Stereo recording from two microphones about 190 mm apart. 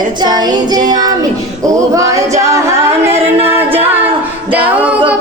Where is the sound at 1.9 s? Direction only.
15° right (ahead or behind).